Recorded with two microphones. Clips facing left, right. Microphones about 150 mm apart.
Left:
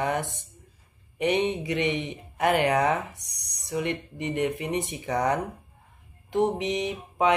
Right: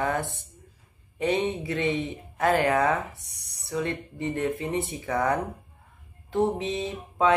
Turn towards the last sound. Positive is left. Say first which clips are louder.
# right 1 dB
turn(degrees=20)  # may be behind; listen again after turning